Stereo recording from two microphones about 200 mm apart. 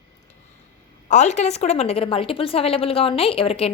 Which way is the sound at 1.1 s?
35° left (ahead or behind).